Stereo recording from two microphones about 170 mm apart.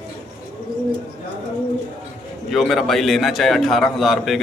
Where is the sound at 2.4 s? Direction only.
Centre (ahead or behind).